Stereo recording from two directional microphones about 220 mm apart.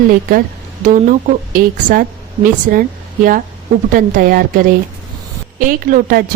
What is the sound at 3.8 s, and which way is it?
A woman's voice, 40° right (ahead or behind).